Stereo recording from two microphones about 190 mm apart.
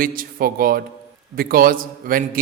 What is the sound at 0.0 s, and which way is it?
A man's voice, 50° right (ahead or behind).